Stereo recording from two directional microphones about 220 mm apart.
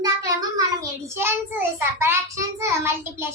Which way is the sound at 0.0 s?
15° right (ahead or behind).